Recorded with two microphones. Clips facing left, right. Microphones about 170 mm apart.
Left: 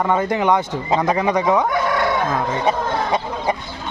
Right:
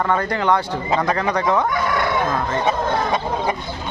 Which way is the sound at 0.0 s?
15° left (ahead or behind).